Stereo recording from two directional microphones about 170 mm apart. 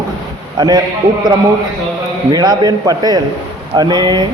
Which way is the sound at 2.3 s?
25° right (ahead or behind).